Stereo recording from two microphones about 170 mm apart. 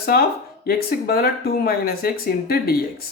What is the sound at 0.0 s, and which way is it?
Speech, 60° left (ahead or behind).